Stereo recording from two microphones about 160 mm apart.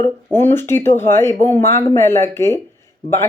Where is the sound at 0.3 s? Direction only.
15° left (ahead or behind).